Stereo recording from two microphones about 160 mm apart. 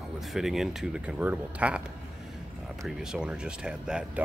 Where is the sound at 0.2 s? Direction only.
Centre (ahead or behind).